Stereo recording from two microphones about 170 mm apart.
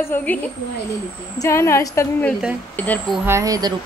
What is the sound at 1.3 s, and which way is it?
Speech, 15° left (ahead or behind).